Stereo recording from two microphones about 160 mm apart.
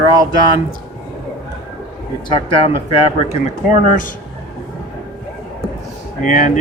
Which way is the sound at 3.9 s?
55° left (ahead or behind).